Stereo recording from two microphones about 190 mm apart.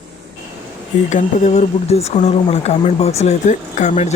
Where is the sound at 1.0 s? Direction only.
40° left (ahead or behind).